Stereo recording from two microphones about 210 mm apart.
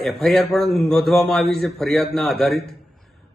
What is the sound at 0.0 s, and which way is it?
A man's voice, centre (ahead or behind).